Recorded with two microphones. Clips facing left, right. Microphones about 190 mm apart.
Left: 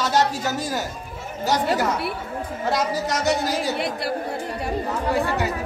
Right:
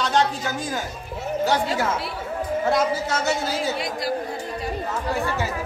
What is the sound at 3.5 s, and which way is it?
Speech, 65° left (ahead or behind).